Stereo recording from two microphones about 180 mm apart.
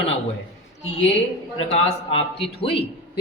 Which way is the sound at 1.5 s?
35° left (ahead or behind).